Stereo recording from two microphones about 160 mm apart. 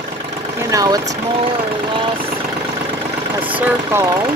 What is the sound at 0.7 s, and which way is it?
Speech, 25° right (ahead or behind).